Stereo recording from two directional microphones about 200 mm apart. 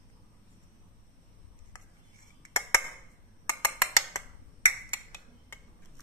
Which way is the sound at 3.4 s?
15° left (ahead or behind).